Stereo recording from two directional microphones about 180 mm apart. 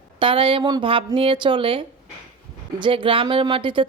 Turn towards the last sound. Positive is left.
turn(degrees=-30)  # may be behind; listen again after turning